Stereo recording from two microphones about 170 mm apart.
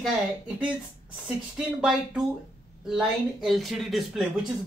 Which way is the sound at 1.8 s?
5° right (ahead or behind).